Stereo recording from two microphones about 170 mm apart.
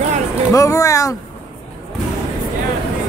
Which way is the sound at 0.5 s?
20° left (ahead or behind).